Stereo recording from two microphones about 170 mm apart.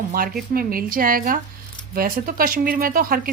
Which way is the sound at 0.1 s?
60° right (ahead or behind).